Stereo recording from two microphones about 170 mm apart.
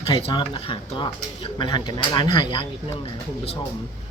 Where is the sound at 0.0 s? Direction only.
30° left (ahead or behind).